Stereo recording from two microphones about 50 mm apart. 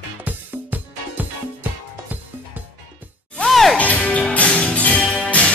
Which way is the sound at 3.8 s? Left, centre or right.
Left.